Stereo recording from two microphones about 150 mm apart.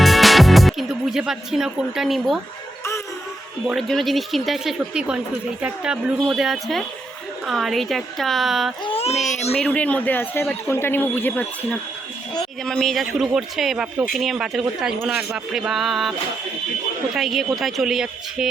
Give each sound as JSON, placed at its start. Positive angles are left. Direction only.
{"t": 0.0, "sound": "music", "side_deg": 0}
{"t": 3.7, "sound": "a man's voice", "side_deg": 0}
{"t": 8.8, "sound": "a child's voice", "side_deg": 40}
{"t": 9.6, "sound": "a man's voice", "side_deg": 10}
{"t": 17.2, "sound": "a man's voice", "side_deg": 0}